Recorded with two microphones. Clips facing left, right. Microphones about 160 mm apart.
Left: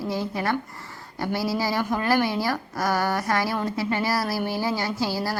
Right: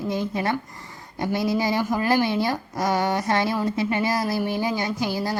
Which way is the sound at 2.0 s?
20° right (ahead or behind).